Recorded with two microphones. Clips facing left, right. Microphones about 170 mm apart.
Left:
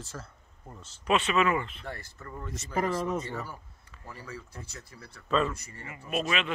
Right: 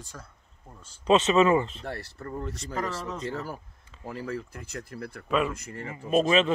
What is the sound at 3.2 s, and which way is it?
Speech, 90° right.